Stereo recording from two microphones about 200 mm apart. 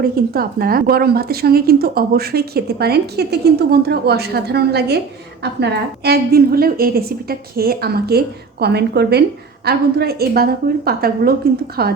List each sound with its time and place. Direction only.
0.0 s speech: 50° right (ahead or behind)